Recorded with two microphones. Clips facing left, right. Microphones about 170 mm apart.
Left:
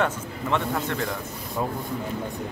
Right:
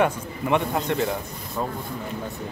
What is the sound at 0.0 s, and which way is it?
Speech, 15° right (ahead or behind).